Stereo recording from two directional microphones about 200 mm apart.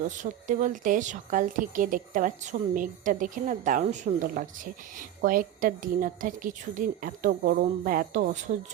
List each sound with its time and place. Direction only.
0.0 s speech: 40° right (ahead or behind)